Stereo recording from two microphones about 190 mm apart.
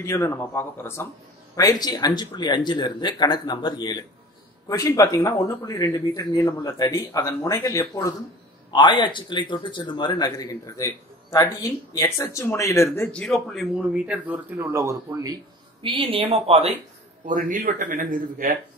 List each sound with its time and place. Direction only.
0.0 s speech: 15° left (ahead or behind); by 15.3 s 15° right (ahead or behind)
15.8 s speech: 25° right (ahead or behind)
17.3 s speech: 45° right (ahead or behind)